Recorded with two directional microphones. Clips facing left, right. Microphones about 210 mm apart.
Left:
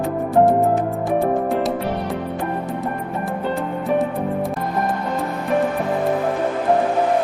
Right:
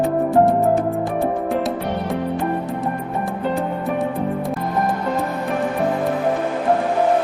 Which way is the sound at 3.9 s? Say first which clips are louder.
Left 5 dB; centre (ahead or behind).